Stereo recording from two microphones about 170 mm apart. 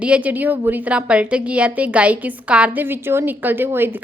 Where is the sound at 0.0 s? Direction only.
10° right (ahead or behind).